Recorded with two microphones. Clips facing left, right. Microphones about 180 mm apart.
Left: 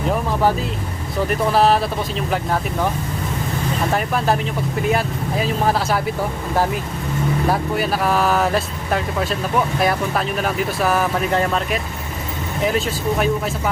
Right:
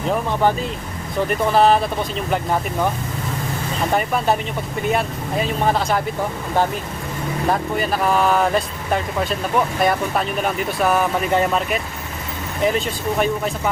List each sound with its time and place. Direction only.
0.1 s speech: 5° left (ahead or behind)
3.9 s speech: centre (ahead or behind)
7.5 s speech: 5° left (ahead or behind)